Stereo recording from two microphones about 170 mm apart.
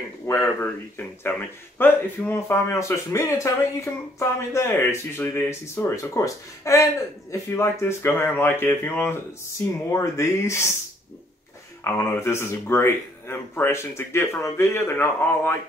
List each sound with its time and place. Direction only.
0.3 s speech: 15° left (ahead or behind)
11.8 s speech: 15° left (ahead or behind)